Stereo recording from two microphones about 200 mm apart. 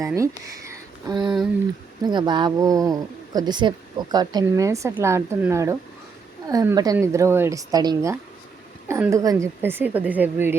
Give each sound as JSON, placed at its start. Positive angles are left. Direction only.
{"t": 0.0, "sound": "speech", "side_deg": -15}
{"t": 1.2, "sound": "speech", "side_deg": 0}
{"t": 2.0, "sound": "speech", "side_deg": -20}